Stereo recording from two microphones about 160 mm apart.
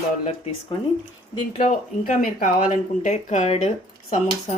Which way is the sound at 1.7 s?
50° left (ahead or behind).